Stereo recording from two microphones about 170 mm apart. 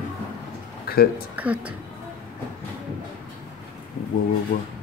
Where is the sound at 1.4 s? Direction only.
10° right (ahead or behind).